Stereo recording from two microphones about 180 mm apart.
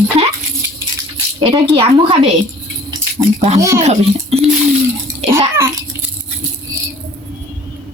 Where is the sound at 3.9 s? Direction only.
35° right (ahead or behind).